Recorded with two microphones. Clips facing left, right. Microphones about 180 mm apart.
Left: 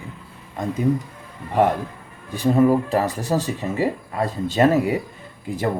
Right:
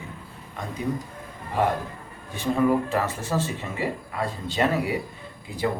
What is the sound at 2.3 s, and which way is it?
Speech, 35° left (ahead or behind).